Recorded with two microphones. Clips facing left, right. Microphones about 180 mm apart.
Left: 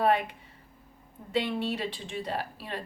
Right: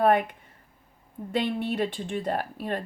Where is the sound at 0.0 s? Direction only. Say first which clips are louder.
Right 4 dB; 50° right (ahead or behind).